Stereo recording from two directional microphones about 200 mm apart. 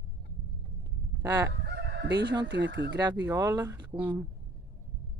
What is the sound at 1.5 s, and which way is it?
Crowing, 55° right (ahead or behind).